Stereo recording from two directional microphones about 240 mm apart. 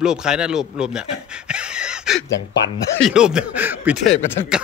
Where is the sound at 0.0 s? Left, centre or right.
Centre.